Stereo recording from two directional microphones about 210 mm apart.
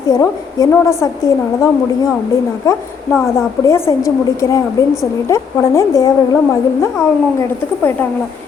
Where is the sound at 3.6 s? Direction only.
15° left (ahead or behind).